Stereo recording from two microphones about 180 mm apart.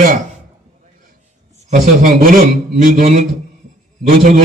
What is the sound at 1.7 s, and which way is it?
A man's voice, 45° right (ahead or behind).